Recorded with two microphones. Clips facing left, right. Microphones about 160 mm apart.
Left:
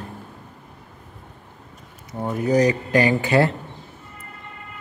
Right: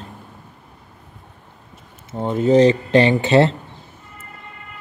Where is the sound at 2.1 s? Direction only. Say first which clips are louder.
Right 5 dB; 25° right (ahead or behind).